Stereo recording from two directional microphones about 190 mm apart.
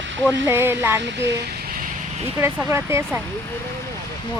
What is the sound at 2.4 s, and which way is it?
Speech, 10° right (ahead or behind).